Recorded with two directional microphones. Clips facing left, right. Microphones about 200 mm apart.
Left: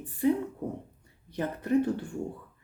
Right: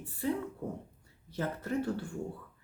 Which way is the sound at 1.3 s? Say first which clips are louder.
Left 7 dB; 20° left (ahead or behind).